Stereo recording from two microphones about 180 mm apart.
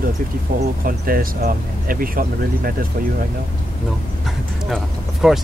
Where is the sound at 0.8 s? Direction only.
55° right (ahead or behind).